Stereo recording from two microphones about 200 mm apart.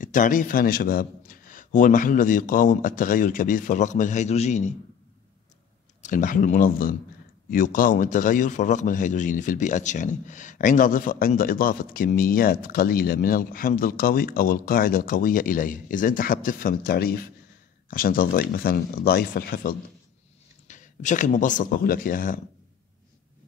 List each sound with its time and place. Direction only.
0.0 s a man's voice: 40° left (ahead or behind)
6.0 s a man's voice: 40° left (ahead or behind)
20.6 s speech: 40° left (ahead or behind)